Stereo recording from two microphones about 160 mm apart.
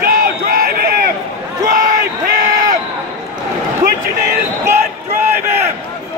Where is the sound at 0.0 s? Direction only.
70° right (ahead or behind).